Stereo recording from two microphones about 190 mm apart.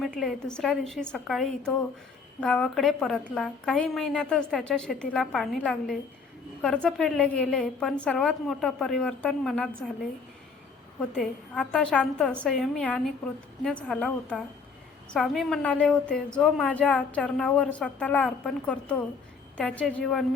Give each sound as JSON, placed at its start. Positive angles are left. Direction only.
{"t": 0.0, "sound": "a woman's voice", "side_deg": 0}
{"t": 11.0, "sound": "a woman's voice", "side_deg": 5}